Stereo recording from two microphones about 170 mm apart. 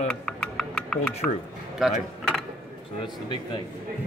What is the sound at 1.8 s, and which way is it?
Speech, centre (ahead or behind).